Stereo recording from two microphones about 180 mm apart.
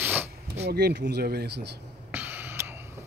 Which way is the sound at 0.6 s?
60° right (ahead or behind).